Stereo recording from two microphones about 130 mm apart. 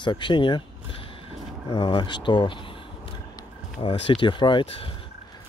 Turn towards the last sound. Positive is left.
turn(degrees=45)  # may be behind; listen again after turning